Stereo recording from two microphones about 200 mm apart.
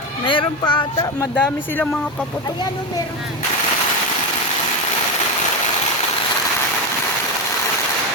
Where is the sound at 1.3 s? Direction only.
10° left (ahead or behind).